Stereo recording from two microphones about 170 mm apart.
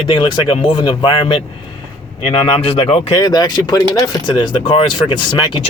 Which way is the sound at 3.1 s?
25° left (ahead or behind).